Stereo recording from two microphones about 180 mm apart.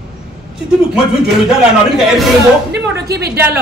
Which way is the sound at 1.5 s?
Centre (ahead or behind).